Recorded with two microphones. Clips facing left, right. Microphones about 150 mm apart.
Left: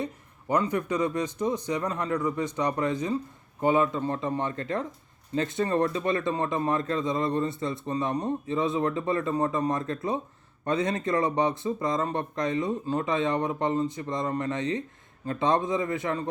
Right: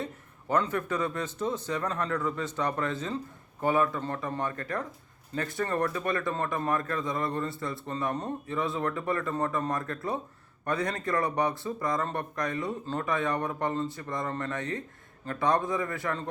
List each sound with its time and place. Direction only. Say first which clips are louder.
0.0 s a man's voice: left 3 dB; 15° left (ahead or behind)